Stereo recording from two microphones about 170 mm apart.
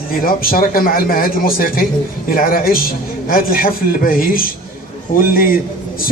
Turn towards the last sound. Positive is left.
turn(degrees=55)  # may be behind; listen again after turning